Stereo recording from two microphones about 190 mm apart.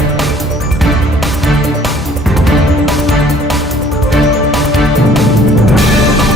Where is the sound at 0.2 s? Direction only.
Centre (ahead or behind).